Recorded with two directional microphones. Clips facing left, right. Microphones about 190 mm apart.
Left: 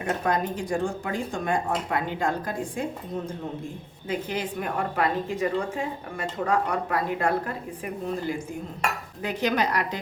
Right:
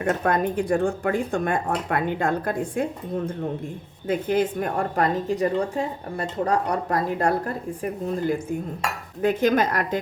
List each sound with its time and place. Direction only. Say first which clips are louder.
0.0 s speech: right 4 dB; 55° right (ahead or behind)
4.0 s a woman's voice: right 7 dB; 50° right (ahead or behind)
9.2 s a woman's voice: right 6 dB; 50° right (ahead or behind)